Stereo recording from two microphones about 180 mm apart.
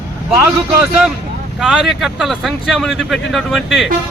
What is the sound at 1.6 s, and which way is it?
Speech, 5° right (ahead or behind).